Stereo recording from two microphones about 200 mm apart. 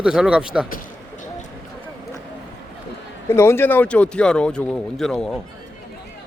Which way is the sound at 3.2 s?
10° left (ahead or behind).